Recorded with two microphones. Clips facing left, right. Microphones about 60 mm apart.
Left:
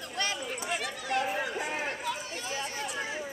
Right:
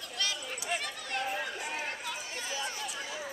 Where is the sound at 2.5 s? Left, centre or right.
Left.